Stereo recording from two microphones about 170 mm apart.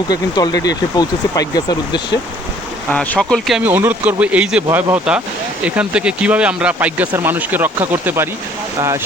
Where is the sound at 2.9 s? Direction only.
5° left (ahead or behind).